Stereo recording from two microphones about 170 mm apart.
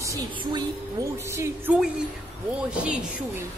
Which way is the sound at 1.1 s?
15° right (ahead or behind).